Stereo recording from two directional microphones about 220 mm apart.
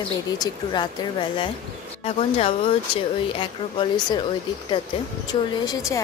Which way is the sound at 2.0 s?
25° left (ahead or behind).